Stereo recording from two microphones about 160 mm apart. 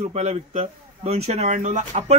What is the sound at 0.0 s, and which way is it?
A man's voice, 45° right (ahead or behind).